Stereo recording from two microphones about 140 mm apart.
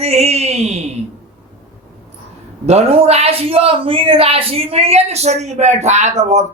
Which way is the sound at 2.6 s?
45° right (ahead or behind).